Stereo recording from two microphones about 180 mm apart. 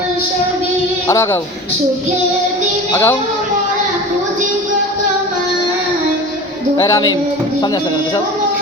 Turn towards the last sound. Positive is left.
turn(degrees=20)  # may be behind; listen again after turning